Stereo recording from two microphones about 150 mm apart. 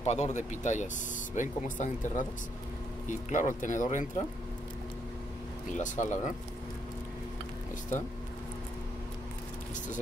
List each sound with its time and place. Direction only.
0.0 s speech: 45° left (ahead or behind)
5.7 s speech: 55° left (ahead or behind)